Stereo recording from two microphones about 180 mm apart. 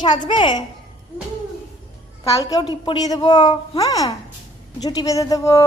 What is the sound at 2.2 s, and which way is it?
A woman's voice, 20° left (ahead or behind).